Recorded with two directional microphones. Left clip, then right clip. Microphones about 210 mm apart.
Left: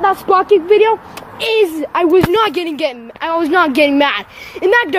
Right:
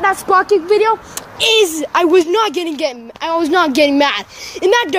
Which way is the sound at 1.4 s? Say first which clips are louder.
Right 2 dB; 10° right (ahead or behind).